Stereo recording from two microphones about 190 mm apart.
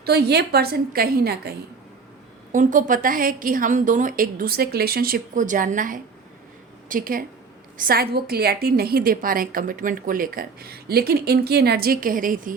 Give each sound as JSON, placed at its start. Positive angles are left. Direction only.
{"t": 0.0, "sound": "a woman's voice", "side_deg": -55}
{"t": 2.5, "sound": "a woman's voice", "side_deg": -45}